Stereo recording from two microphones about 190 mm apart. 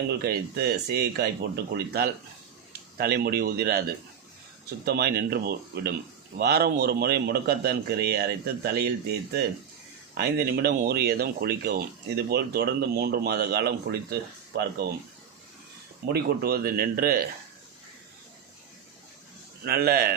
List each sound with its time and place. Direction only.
0.2 s speech: 60° right (ahead or behind)
4.9 s speech: 60° right (ahead or behind)
10.2 s speech: 55° right (ahead or behind)
16.1 s speech: 55° right (ahead or behind)
19.6 s speech: 55° right (ahead or behind)